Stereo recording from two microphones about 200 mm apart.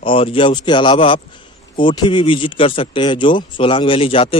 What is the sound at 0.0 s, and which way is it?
Speech, 25° left (ahead or behind).